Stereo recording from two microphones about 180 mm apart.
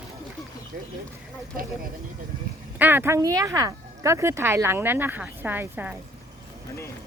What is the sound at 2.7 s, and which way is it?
Speech, 10° right (ahead or behind).